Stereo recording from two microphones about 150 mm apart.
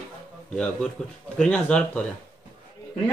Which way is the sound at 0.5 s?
5° left (ahead or behind).